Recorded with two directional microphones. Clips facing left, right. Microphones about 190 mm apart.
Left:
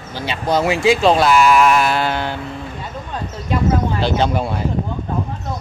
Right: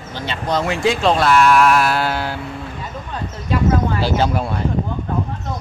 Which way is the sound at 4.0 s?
5° right (ahead or behind).